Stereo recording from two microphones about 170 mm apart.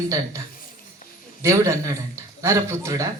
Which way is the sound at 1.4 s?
20° right (ahead or behind).